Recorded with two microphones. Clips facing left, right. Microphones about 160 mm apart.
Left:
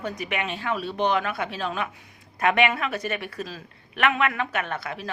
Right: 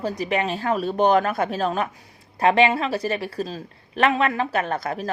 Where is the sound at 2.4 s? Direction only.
30° right (ahead or behind).